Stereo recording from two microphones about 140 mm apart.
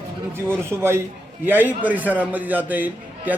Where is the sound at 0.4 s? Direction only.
15° right (ahead or behind).